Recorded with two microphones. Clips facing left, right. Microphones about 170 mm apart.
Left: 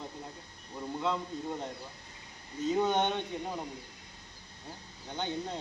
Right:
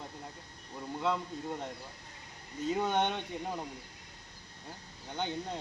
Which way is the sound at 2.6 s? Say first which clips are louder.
Left 2 dB; 5° right (ahead or behind).